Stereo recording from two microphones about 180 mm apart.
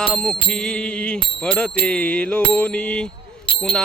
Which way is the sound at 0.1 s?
5° left (ahead or behind).